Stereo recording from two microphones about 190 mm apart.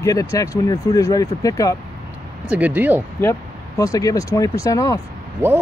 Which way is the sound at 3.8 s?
20° left (ahead or behind).